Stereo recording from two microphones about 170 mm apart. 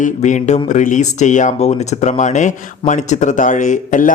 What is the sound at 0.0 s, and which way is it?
Speech, 45° left (ahead or behind).